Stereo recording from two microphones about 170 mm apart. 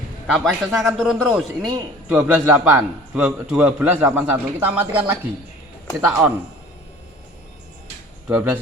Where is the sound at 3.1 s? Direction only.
5° right (ahead or behind).